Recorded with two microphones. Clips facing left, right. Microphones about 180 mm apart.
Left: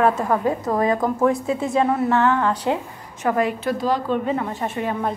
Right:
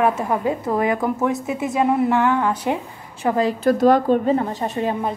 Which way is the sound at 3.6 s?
45° right (ahead or behind).